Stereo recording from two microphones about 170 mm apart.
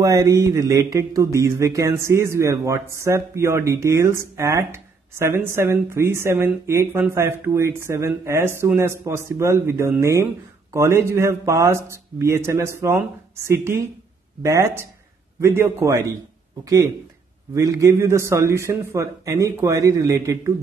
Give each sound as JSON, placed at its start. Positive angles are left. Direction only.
{"t": 0.0, "sound": "speech", "side_deg": -20}